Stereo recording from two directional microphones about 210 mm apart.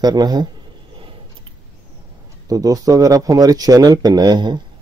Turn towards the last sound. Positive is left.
turn(degrees=-20)  # may be behind; listen again after turning